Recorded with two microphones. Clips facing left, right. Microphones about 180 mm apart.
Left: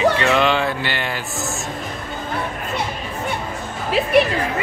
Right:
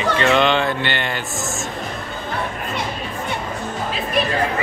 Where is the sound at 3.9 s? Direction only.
75° left (ahead or behind).